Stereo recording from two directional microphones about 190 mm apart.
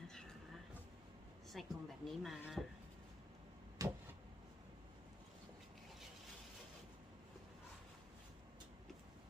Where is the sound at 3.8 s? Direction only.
15° right (ahead or behind).